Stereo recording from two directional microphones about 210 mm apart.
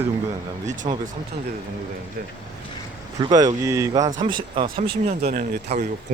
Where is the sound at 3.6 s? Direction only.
15° right (ahead or behind).